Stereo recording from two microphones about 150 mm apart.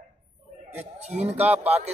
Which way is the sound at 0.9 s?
50° right (ahead or behind).